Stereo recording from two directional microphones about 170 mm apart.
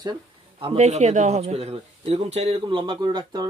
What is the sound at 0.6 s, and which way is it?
Speech, 35° right (ahead or behind).